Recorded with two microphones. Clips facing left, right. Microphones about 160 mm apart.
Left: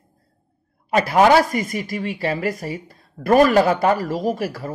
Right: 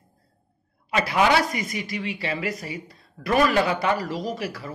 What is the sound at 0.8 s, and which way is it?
Speech, 45° left (ahead or behind).